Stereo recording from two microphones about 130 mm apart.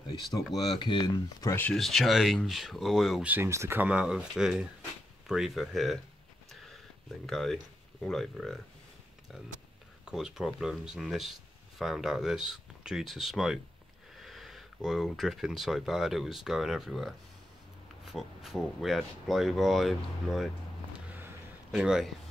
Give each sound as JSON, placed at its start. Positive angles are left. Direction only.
{"t": 0.0, "sound": "speech", "side_deg": 35}
{"t": 1.5, "sound": "speech", "side_deg": 15}
{"t": 1.8, "sound": "speech", "side_deg": 0}
{"t": 3.3, "sound": "speech", "side_deg": -20}
{"t": 6.5, "sound": "a sound", "side_deg": 0}
{"t": 7.2, "sound": "speech", "side_deg": 5}
{"t": 10.0, "sound": "speech", "side_deg": -5}
{"t": 21.7, "sound": "speech", "side_deg": -5}